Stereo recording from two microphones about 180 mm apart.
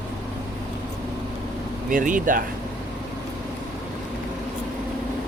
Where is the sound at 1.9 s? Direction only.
50° right (ahead or behind).